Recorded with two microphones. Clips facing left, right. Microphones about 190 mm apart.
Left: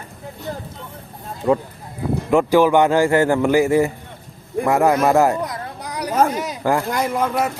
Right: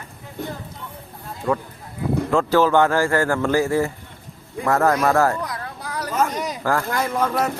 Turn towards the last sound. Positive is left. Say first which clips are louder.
# left 1 dB
turn(degrees=10)  # may be behind; listen again after turning